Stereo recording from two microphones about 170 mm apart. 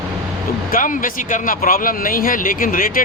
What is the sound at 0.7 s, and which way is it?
Speech, 50° left (ahead or behind).